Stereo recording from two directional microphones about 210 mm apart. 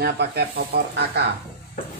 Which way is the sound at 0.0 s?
50° right (ahead or behind).